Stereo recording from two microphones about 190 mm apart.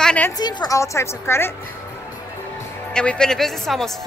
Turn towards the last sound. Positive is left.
turn(degrees=0)  # may be behind; listen again after turning